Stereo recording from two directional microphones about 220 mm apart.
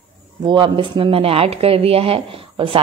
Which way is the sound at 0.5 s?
20° right (ahead or behind).